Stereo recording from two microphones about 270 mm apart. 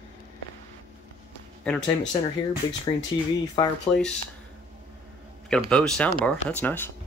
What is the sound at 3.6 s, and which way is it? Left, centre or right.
Speech, centre.